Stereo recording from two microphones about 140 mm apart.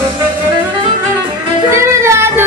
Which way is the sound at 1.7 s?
20° right (ahead or behind).